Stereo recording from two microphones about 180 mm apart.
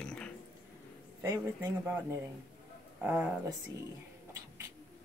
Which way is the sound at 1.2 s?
15° right (ahead or behind).